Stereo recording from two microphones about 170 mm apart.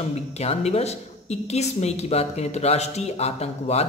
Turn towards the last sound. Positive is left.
turn(degrees=40)  # may be behind; listen again after turning